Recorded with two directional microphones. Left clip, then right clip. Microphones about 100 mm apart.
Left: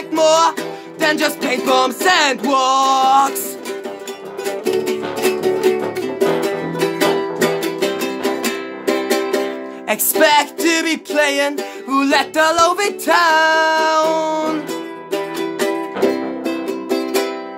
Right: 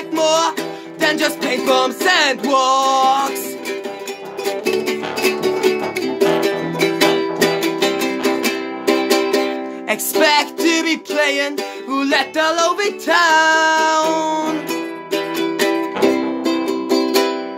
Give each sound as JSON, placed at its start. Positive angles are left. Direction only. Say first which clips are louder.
{"t": 0.1, "sound": "music", "louder": "left 3 dB", "side_deg": 40}
{"t": 1.0, "sound": "music", "louder": "left 1 dB", "side_deg": 25}
{"t": 1.7, "sound": "music", "louder": "left 1 dB", "side_deg": 40}
{"t": 2.4, "sound": "music", "louder": "even", "side_deg": 25}
{"t": 4.5, "sound": "music", "louder": "even", "side_deg": -30}
{"t": 10.1, "sound": "music", "louder": "left 1 dB", "side_deg": 25}
{"t": 13.1, "sound": "music", "louder": "even", "side_deg": 20}
{"t": 14.7, "sound": "music", "louder": "right 2 dB", "side_deg": -35}